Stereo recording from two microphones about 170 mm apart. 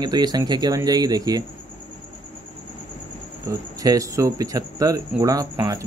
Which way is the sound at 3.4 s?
20° right (ahead or behind).